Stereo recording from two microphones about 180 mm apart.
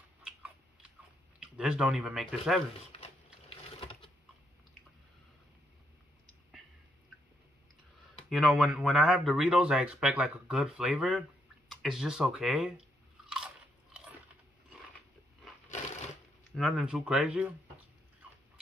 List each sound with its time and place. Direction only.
1.4 s speech: 5° right (ahead or behind)
2.9 s sewing machine: 30° left (ahead or behind)
8.2 s speech: centre (ahead or behind)
16.5 s speech: centre (ahead or behind)